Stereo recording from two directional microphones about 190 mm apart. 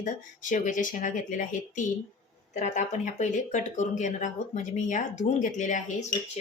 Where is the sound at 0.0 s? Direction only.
40° left (ahead or behind).